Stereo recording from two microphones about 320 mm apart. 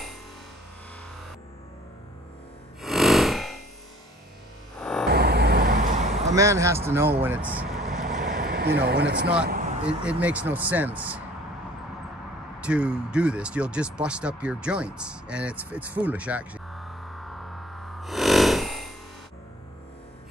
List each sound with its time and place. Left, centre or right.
2.8 s a sound: centre
4.7 s music: centre
5.1 s vehicle: right
6.3 s speech: centre
8.5 s speech: right
9.5 s a sound: right
10.2 s speech: centre
12.5 s speech: centre
15.7 s music: centre